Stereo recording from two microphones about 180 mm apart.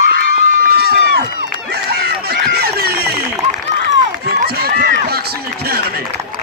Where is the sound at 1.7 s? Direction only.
60° right (ahead or behind).